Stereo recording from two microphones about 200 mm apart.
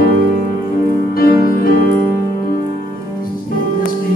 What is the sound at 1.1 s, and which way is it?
Music, 45° left (ahead or behind).